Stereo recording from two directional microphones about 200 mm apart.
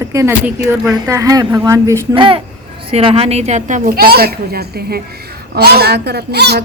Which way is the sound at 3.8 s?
50° right (ahead or behind).